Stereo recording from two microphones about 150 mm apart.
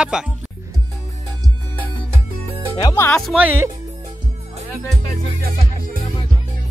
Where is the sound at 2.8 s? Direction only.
25° left (ahead or behind).